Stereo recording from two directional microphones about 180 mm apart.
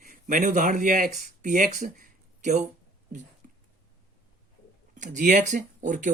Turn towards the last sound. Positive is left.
turn(degrees=-45)  # may be behind; listen again after turning